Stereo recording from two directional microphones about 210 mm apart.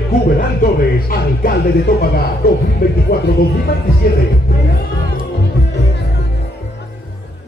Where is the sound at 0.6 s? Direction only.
45° left (ahead or behind).